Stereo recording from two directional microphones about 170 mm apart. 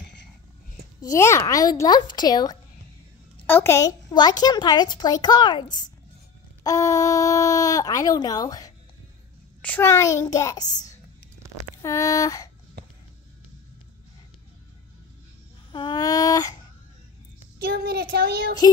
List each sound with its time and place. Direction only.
1.0 s a child's voice: 15° left (ahead or behind)
9.6 s a child's voice: 10° left (ahead or behind)
11.8 s a child's voice: 15° left (ahead or behind)
15.7 s a child's voice: 25° left (ahead or behind)
17.6 s speech: 65° right (ahead or behind)